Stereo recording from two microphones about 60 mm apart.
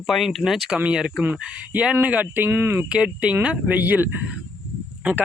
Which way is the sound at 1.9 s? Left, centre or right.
Right.